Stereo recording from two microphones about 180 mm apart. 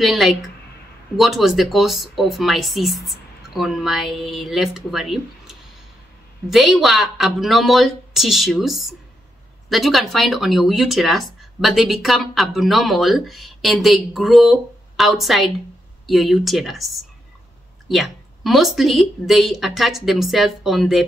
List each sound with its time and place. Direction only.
0.0 s speech: centre (ahead or behind)